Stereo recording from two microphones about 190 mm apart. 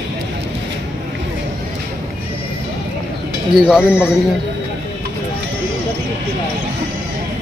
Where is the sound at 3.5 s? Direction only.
5° right (ahead or behind).